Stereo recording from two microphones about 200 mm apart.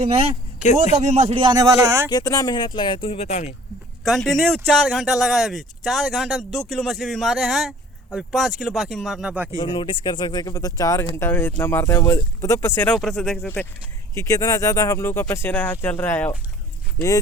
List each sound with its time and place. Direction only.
0.9 s speech: 35° right (ahead or behind); by 2.0 s 15° right (ahead or behind)
2.0 s speech: 20° left (ahead or behind); by 3.5 s 35° left (ahead or behind)
4.0 s speech: centre (ahead or behind)
9.6 s speech: 25° left (ahead or behind)